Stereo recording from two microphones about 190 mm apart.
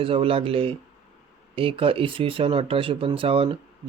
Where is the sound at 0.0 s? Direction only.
30° right (ahead or behind).